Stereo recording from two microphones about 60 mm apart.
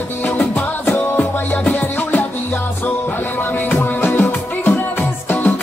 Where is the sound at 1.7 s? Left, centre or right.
Left.